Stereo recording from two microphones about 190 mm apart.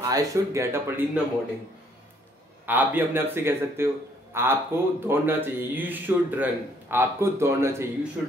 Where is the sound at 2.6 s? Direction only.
10° right (ahead or behind).